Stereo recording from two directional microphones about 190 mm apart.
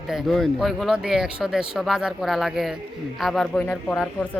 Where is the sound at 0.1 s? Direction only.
Centre (ahead or behind).